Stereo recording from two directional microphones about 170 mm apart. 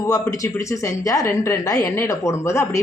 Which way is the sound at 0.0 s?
20° left (ahead or behind).